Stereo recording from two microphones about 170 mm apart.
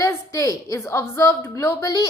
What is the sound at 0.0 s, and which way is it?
A woman's voice, 20° left (ahead or behind).